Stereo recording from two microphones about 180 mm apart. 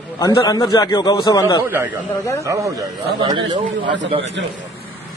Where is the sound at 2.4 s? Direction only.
20° right (ahead or behind).